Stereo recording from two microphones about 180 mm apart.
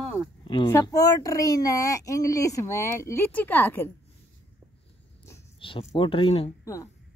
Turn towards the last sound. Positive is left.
turn(degrees=15)  # may be behind; listen again after turning